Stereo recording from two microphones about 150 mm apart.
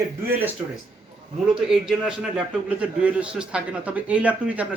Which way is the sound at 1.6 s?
5° right (ahead or behind).